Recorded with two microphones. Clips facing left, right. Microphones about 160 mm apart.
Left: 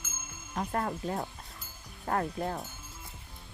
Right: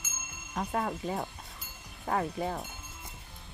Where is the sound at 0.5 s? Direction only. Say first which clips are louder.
Even; centre (ahead or behind).